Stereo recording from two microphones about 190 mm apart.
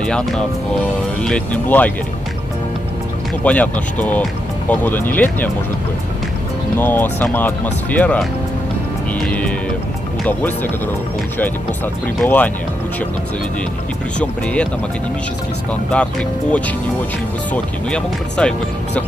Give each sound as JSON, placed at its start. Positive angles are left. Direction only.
{"t": 0.0, "sound": "speech", "side_deg": 0}
{"t": 3.4, "sound": "speech", "side_deg": 5}
{"t": 6.8, "sound": "speech", "side_deg": 10}
{"t": 12.2, "sound": "speech", "side_deg": 10}
{"t": 14.2, "sound": "speech", "side_deg": 5}
{"t": 15.9, "sound": "speech", "side_deg": 5}